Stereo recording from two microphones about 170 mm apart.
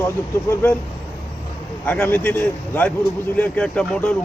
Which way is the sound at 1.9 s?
10° left (ahead or behind).